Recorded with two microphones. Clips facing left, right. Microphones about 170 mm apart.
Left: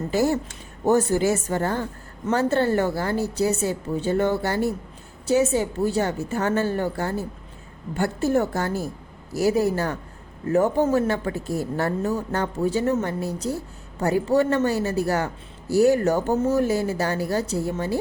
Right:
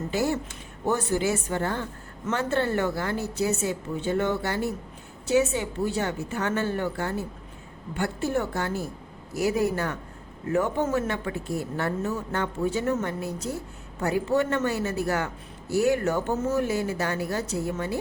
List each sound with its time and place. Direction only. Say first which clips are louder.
0.1 s a woman's voice: left 5 dB; 40° left (ahead or behind)